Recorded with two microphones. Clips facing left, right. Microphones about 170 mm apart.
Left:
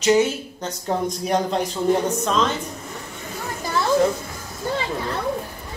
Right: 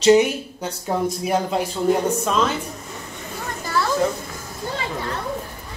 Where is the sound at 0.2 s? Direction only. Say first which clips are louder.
Even; 10° right (ahead or behind).